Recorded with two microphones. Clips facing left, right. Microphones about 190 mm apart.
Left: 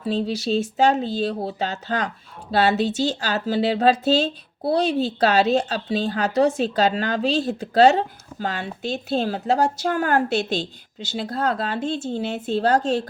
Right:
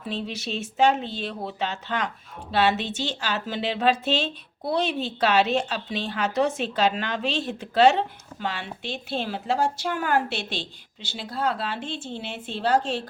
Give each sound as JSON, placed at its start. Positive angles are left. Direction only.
{"t": 0.0, "sound": "speech", "side_deg": 35}